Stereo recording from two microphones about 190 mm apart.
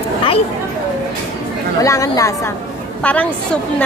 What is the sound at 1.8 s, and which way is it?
A woman's voice, 15° left (ahead or behind).